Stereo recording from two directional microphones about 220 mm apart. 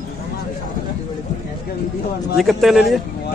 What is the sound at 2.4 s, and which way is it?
Speech, centre (ahead or behind).